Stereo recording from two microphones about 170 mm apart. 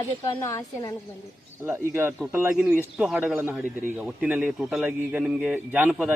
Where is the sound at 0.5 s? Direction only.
20° left (ahead or behind).